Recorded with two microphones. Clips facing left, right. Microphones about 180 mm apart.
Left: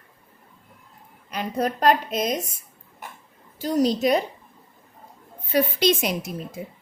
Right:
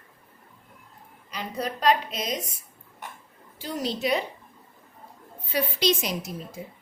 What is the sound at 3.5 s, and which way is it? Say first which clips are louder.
Speech: left 9 dB; 40° left (ahead or behind).